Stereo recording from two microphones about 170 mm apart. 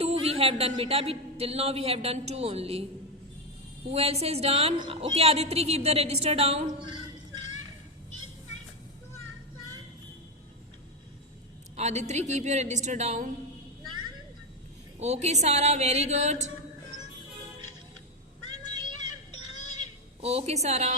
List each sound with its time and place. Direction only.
0.0 s a woman's voice: 35° right (ahead or behind)
3.9 s a woman's voice: 35° right (ahead or behind)
11.8 s a woman's voice: 40° right (ahead or behind)
14.9 s a woman's voice: 40° right (ahead or behind)
18.6 s vehicle: 25° right (ahead or behind)
19.3 s a sound: 25° right (ahead or behind)